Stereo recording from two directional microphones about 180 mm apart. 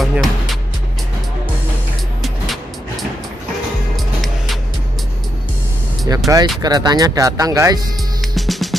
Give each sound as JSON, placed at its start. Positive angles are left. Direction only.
{"t": 0.0, "sound": "music", "side_deg": 0}
{"t": 2.2, "sound": "vehicle", "side_deg": 0}
{"t": 3.9, "sound": "music", "side_deg": 0}
{"t": 6.0, "sound": "speech", "side_deg": -20}
{"t": 8.2, "sound": "music", "side_deg": 0}